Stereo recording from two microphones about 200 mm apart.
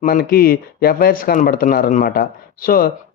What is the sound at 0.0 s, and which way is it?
Speech, 45° left (ahead or behind).